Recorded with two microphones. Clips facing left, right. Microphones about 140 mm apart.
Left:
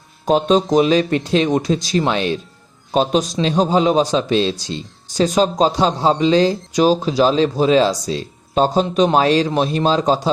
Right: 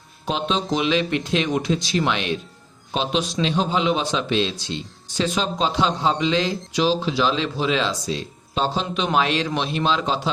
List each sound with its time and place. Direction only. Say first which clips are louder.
0.3 s a man's voice: left 9 dB; 45° left (ahead or behind)